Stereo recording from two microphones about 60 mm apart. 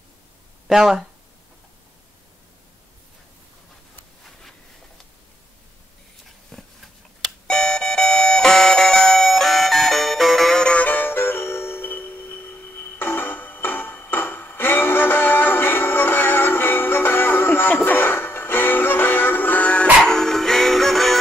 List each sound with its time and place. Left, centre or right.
0.7 s speech: centre
6.5 s a sound: centre
7.4 s doorbell: centre
10.6 s music: left
20.1 s music: centre